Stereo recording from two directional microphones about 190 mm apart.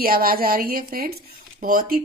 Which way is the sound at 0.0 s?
50° right (ahead or behind).